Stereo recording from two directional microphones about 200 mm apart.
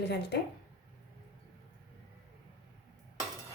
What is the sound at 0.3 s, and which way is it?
Speech, 55° left (ahead or behind).